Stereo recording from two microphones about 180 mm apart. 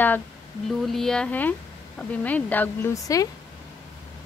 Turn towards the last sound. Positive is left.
turn(degrees=20)  # may be behind; listen again after turning